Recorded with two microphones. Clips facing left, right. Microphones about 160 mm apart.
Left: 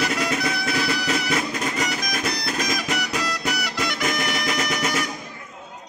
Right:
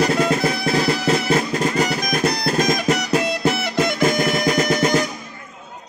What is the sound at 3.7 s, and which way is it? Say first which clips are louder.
Music: right 8 dB; 50° right (ahead or behind).